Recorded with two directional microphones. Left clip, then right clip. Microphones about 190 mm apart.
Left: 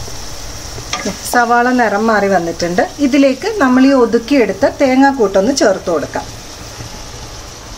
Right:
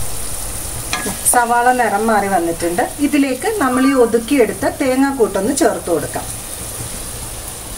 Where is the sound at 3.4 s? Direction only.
40° left (ahead or behind).